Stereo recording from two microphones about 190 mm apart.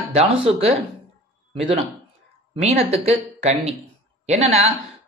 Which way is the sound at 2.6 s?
30° right (ahead or behind).